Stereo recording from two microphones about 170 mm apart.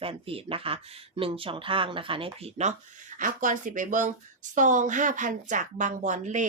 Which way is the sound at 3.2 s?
50° right (ahead or behind).